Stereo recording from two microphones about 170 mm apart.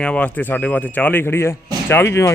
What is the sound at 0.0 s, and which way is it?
Speech, 5° left (ahead or behind).